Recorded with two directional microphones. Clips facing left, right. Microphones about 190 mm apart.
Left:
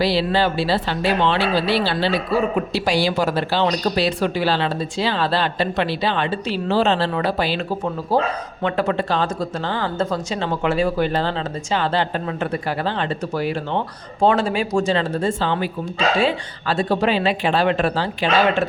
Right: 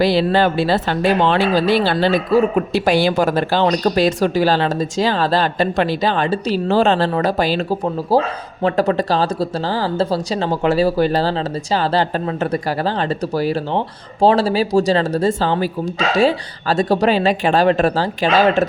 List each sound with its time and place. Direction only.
0.0 s speech: 50° right (ahead or behind)